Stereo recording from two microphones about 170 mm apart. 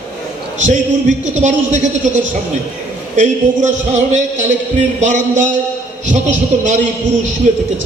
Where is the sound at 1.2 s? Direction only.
45° right (ahead or behind).